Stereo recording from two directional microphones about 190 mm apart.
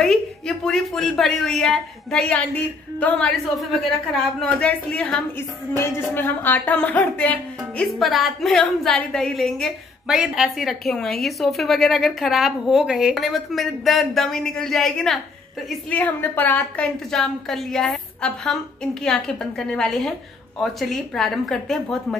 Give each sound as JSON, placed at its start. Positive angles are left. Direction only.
{"t": 0.0, "sound": "speech", "side_deg": 0}